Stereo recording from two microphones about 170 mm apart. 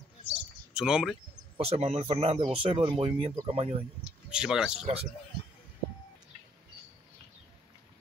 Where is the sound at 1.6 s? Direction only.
35° right (ahead or behind).